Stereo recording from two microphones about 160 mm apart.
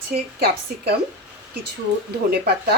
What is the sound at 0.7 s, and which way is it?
Speech, 70° right (ahead or behind).